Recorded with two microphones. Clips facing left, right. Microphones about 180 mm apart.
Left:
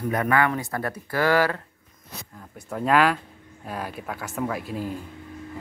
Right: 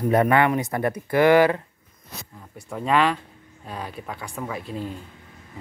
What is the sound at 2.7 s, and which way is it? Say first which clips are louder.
Speech: left 1 dB; 5° left (ahead or behind).